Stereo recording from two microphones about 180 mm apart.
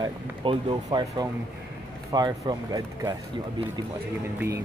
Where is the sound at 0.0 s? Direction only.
30° right (ahead or behind).